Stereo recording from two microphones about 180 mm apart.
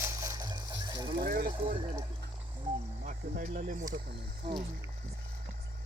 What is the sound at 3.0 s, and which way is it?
Speech, 50° right (ahead or behind).